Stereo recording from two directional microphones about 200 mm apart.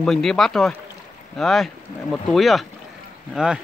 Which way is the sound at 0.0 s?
Centre (ahead or behind).